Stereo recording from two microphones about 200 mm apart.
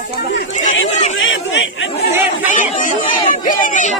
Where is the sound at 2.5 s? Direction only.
40° left (ahead or behind).